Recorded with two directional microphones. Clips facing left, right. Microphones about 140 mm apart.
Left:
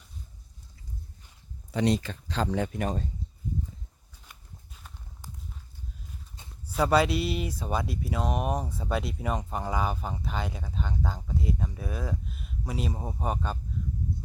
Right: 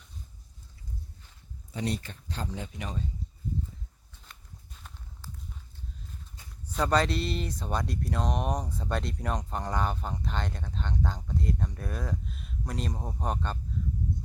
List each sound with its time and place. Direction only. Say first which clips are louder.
1.7 s speech: left 7 dB; 90° left; by 3.1 s 50° left (ahead or behind)
4.1 s walk: even; 10° left (ahead or behind)
5.2 s walk: even; 15° left (ahead or behind)
6.7 s speech: left 3 dB; 5° left (ahead or behind)